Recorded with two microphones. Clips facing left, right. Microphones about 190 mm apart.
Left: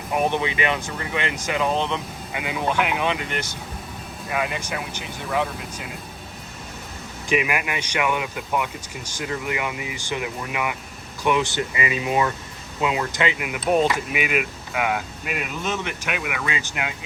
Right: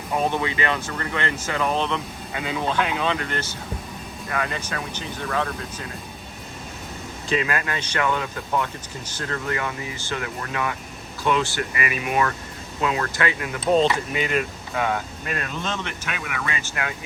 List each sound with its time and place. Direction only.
0.1 s speech: 15° left (ahead or behind)
7.3 s speech: 15° left (ahead or behind)